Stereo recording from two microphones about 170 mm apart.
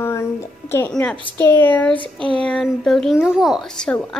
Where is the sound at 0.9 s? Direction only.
5° left (ahead or behind).